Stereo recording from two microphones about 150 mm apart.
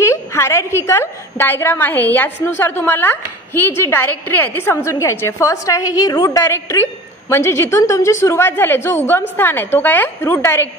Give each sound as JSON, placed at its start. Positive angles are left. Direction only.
{"t": 0.0, "sound": "a woman's voice", "side_deg": 20}